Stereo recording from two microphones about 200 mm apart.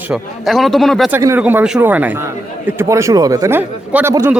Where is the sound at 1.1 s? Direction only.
10° right (ahead or behind).